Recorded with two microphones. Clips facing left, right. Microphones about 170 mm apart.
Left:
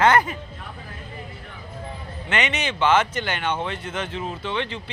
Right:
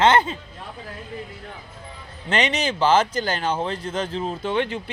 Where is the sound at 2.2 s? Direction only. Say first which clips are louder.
Right 3 dB; 35° right (ahead or behind).